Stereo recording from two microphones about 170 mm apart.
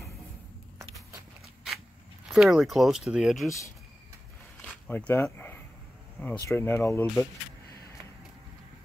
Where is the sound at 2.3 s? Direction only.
Centre (ahead or behind).